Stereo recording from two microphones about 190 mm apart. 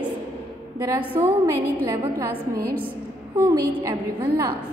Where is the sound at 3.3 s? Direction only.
15° right (ahead or behind).